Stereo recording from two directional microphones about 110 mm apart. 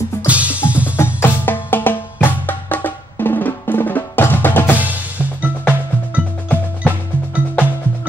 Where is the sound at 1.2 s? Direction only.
20° left (ahead or behind).